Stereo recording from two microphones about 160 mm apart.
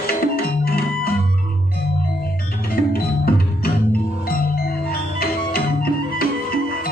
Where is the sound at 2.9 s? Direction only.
65° left (ahead or behind).